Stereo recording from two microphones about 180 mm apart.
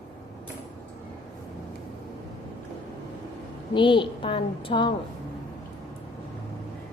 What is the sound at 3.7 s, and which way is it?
A woman's voice, 25° left (ahead or behind).